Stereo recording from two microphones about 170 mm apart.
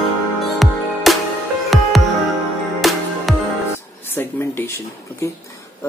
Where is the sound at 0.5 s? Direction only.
Centre (ahead or behind).